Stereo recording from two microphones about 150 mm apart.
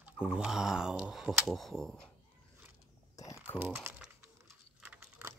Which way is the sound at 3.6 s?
15° right (ahead or behind).